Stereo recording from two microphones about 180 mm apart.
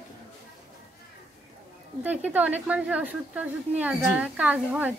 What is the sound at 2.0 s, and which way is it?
A woman's voice, 10° right (ahead or behind).